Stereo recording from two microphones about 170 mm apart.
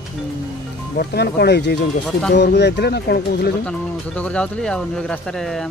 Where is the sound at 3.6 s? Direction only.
5° left (ahead or behind).